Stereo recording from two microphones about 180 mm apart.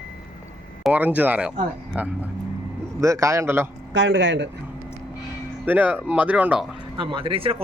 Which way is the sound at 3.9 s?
90° right.